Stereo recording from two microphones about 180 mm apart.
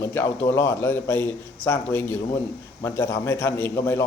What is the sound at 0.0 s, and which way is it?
A man's voice, 15° left (ahead or behind).